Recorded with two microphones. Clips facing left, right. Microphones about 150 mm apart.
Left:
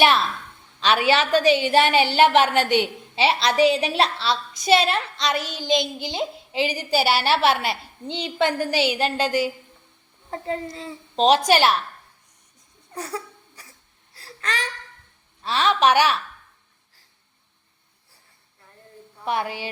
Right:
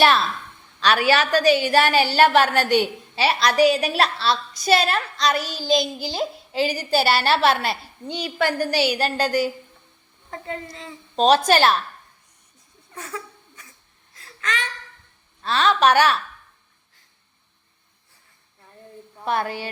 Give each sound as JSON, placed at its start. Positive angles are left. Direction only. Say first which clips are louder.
{"t": 0.8, "sound": "a woman's voice", "louder": "right 1 dB", "side_deg": 20}
{"t": 10.2, "sound": "a woman's voice", "louder": "left 4 dB", "side_deg": 30}
{"t": 11.3, "sound": "a woman's voice", "louder": "right 1 dB", "side_deg": 15}
{"t": 12.9, "sound": "a sound", "louder": "left 3 dB", "side_deg": 35}
{"t": 14.1, "sound": "whimper", "louder": "right 1 dB", "side_deg": 35}
{"t": 15.4, "sound": "a woman's voice", "louder": "right 1 dB", "side_deg": 15}
{"t": 19.2, "sound": "a woman's voice", "louder": "right 1 dB", "side_deg": 15}